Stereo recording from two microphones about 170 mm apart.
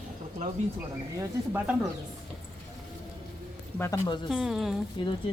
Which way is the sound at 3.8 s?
15° left (ahead or behind).